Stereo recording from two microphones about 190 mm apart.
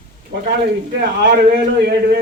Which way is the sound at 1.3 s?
50° right (ahead or behind).